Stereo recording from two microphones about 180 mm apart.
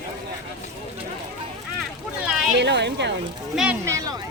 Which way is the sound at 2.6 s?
75° right (ahead or behind).